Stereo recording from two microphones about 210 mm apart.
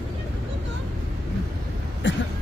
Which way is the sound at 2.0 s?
60° left (ahead or behind).